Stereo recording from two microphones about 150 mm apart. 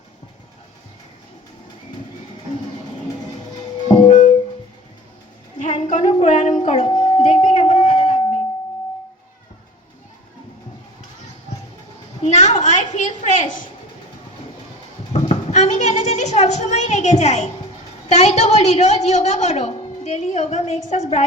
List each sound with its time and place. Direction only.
3.8 s music: 35° left (ahead or behind)
4.1 s music: 50° left (ahead or behind)
5.5 s child singing: 55° left (ahead or behind)
7.2 s a sound: 55° left (ahead or behind)
12.2 s a woman's voice: 50° left (ahead or behind)
15.1 s a woman's voice: 45° left (ahead or behind)